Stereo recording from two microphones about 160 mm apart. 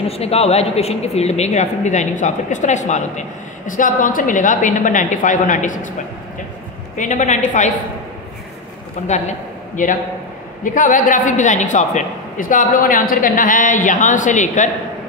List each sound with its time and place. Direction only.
0.1 s a woman's voice: 40° left (ahead or behind)
7.0 s a woman's voice: 50° left (ahead or behind)
9.8 s a woman's voice: 55° left (ahead or behind)